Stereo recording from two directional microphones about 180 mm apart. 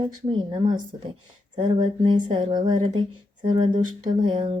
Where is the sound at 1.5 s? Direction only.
25° right (ahead or behind).